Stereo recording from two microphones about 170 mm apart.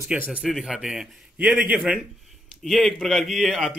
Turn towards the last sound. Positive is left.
turn(degrees=0)  # may be behind; listen again after turning